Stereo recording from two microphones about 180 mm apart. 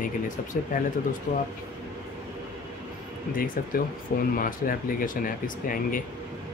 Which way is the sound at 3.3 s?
55° left (ahead or behind).